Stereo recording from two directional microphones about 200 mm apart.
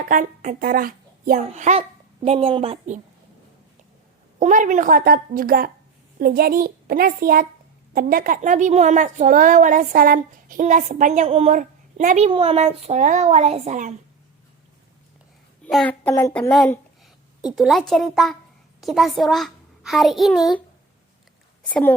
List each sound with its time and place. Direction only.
0.0 s a woman's voice: 40° right (ahead or behind)
1.5 s a woman's voice: 35° right (ahead or behind)
4.4 s a woman's voice: 40° right (ahead or behind)
15.6 s a child's voice: 5° left (ahead or behind)
21.7 s a child's voice: 5° left (ahead or behind)